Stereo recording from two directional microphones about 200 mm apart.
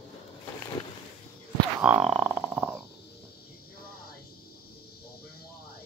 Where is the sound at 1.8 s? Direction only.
5° right (ahead or behind).